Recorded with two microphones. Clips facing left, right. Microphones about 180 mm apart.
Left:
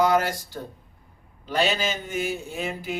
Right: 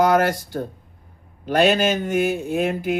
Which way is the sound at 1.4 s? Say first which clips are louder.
Right 7 dB; 50° right (ahead or behind).